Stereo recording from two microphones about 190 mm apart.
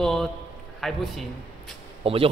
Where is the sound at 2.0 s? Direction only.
30° right (ahead or behind).